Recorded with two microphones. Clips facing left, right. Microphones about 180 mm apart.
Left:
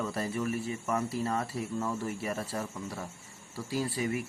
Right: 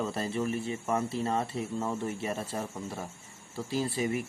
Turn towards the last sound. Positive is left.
turn(degrees=-25)  # may be behind; listen again after turning